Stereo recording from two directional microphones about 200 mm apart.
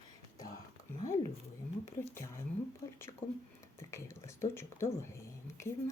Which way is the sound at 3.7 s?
15° left (ahead or behind).